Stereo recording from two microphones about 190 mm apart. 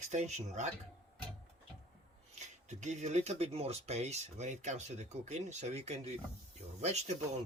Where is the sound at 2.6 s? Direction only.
40° right (ahead or behind).